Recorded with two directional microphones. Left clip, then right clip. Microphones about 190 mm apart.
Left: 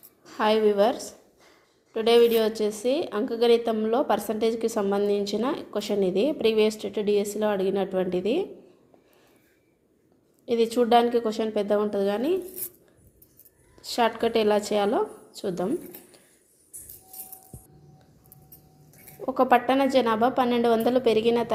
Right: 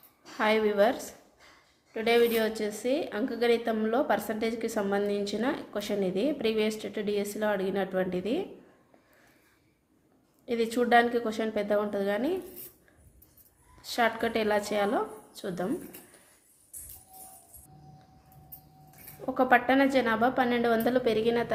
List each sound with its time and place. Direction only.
0.3 s a woman's voice: 10° left (ahead or behind)
10.4 s a woman's voice: 15° left (ahead or behind)
13.8 s a woman's voice: 15° left (ahead or behind)
19.2 s a woman's voice: 10° left (ahead or behind)